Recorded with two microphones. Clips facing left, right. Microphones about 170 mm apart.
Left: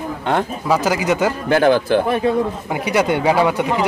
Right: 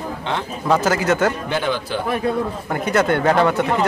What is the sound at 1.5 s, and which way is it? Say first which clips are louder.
Speech: left 8 dB; 50° left (ahead or behind).